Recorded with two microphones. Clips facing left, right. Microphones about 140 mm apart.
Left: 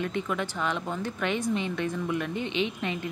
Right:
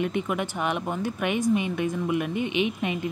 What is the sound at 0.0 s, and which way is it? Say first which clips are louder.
Speech: right 3 dB; 15° right (ahead or behind).